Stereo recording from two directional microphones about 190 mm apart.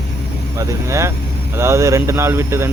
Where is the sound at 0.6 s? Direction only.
15° right (ahead or behind).